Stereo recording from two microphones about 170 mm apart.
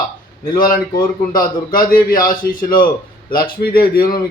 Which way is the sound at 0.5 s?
55° left (ahead or behind).